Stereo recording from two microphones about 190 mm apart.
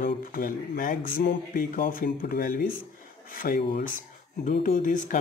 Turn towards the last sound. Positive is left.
turn(degrees=45)  # may be behind; listen again after turning